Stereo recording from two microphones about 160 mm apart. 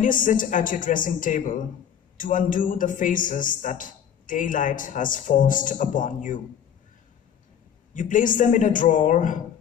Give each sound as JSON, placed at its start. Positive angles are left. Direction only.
{"t": 0.0, "sound": "a man's voice", "side_deg": 55}
{"t": 7.9, "sound": "a man's voice", "side_deg": 55}